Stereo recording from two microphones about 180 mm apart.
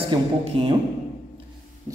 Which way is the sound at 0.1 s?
25° right (ahead or behind).